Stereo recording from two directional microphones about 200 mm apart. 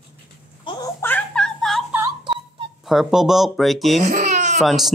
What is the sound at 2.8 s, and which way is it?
Speech, centre (ahead or behind).